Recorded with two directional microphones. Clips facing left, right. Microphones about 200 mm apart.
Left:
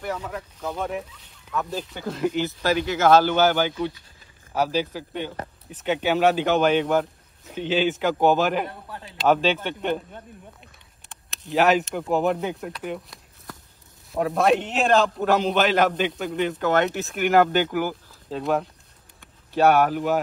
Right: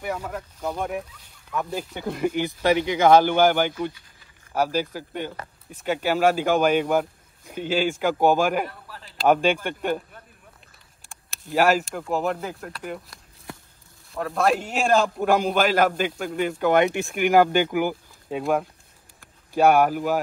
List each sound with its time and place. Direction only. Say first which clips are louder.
0.0 s a man's voice: even; 10° right (ahead or behind)
8.8 s a sound: left 5 dB; 25° left (ahead or behind)
9.3 s a man's voice: right 1 dB; 10° right (ahead or behind)
11.4 s speech: even; 5° right (ahead or behind)
14.2 s a man's voice: left 2 dB; centre (ahead or behind)
17.0 s speech: right 1 dB; centre (ahead or behind)
17.3 s a man's voice: right 1 dB; 10° right (ahead or behind)
17.7 s a sound: right 2 dB; 10° right (ahead or behind)